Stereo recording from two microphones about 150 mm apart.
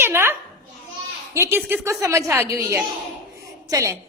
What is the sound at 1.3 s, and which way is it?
A woman's voice, 15° right (ahead or behind).